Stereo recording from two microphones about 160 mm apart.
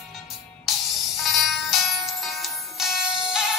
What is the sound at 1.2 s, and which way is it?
Music, centre (ahead or behind).